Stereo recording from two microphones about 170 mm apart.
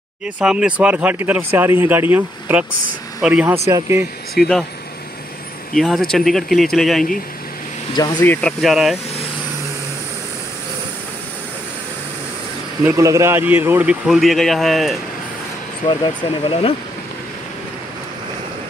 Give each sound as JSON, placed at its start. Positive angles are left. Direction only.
{"t": 0.4, "sound": "speech", "side_deg": -5}
{"t": 4.4, "sound": "speech", "side_deg": 0}
{"t": 5.8, "sound": "speech", "side_deg": 0}
{"t": 7.9, "sound": "speech", "side_deg": 25}
{"t": 8.2, "sound": "speech", "side_deg": 10}
{"t": 12.8, "sound": "speech", "side_deg": -20}
{"t": 14.0, "sound": "speech", "side_deg": 0}
{"t": 15.9, "sound": "speech", "side_deg": 30}